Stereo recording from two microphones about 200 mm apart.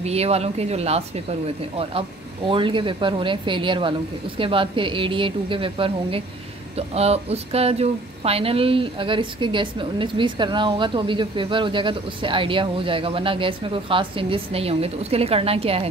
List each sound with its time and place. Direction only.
0.0 s speech: 30° right (ahead or behind)